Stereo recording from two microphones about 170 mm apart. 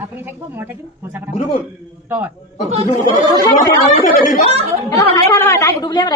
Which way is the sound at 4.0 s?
55° left (ahead or behind).